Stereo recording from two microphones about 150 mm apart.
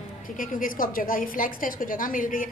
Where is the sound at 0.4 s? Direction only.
65° left (ahead or behind).